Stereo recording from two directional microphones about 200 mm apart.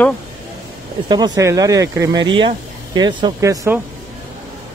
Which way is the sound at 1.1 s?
20° right (ahead or behind).